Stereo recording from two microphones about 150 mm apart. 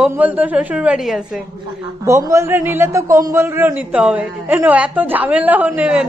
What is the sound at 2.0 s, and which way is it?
A man's voice, 20° right (ahead or behind).